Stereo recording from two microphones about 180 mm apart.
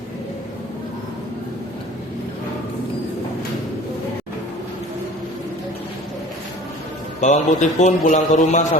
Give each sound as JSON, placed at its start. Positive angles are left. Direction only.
{"t": 7.2, "sound": "a man's voice", "side_deg": 40}